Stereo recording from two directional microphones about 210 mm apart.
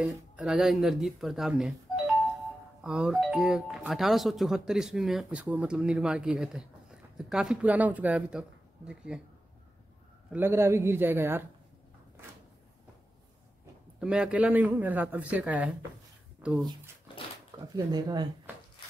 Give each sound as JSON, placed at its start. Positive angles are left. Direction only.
{"t": 0.0, "sound": "speech", "side_deg": 0}
{"t": 10.3, "sound": "a man's voice", "side_deg": -10}
{"t": 13.9, "sound": "a man's voice", "side_deg": -5}
{"t": 17.7, "sound": "speech", "side_deg": -20}